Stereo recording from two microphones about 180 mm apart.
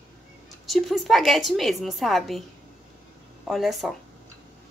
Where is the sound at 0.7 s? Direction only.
Centre (ahead or behind).